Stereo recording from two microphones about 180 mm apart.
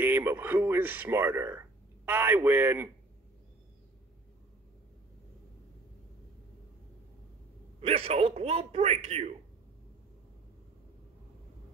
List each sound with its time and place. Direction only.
0.0 s speech: 10° right (ahead or behind)
7.8 s speech: 35° right (ahead or behind)